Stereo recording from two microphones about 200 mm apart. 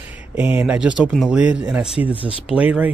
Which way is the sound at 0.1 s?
10° right (ahead or behind).